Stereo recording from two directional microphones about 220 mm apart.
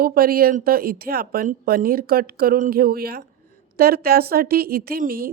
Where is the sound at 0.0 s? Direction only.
40° right (ahead or behind).